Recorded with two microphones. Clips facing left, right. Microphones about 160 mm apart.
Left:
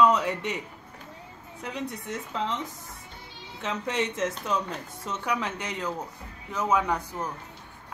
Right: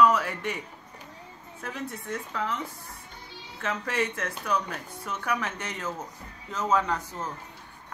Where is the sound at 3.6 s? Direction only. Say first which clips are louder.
Even; 20° left (ahead or behind).